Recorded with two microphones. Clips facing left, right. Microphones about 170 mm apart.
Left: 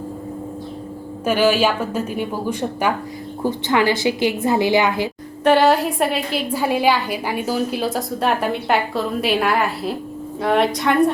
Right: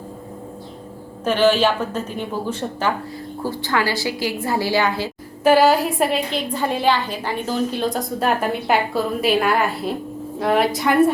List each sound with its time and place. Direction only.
1.2 s a woman's voice: 10° left (ahead or behind)
5.4 s a woman's voice: 5° right (ahead or behind)